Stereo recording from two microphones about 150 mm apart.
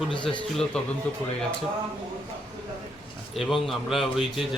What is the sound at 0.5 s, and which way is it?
Speech, 5° left (ahead or behind).